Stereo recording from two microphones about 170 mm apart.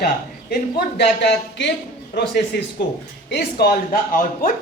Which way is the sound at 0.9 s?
85° left.